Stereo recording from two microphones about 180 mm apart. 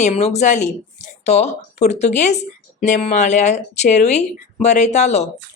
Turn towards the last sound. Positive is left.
turn(degrees=40)  # may be behind; listen again after turning